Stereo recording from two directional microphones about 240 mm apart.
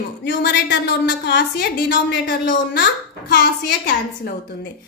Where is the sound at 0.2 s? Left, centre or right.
Left.